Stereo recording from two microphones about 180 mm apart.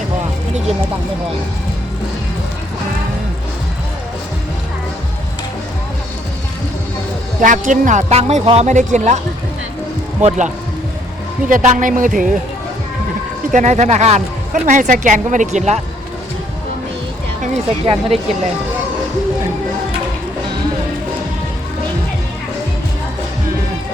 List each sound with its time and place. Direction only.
7.4 s speech: 45° right (ahead or behind)
10.2 s speech: 40° right (ahead or behind)
13.5 s speech: 45° right (ahead or behind)
17.4 s speech: 35° right (ahead or behind)